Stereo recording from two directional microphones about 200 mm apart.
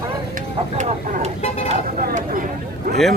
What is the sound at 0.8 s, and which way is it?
Speech, 40° right (ahead or behind).